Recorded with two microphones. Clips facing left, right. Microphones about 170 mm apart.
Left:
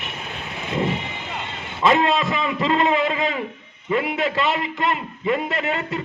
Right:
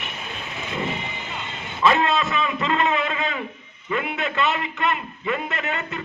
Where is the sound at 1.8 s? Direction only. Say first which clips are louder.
Left 2 dB; 25° left (ahead or behind).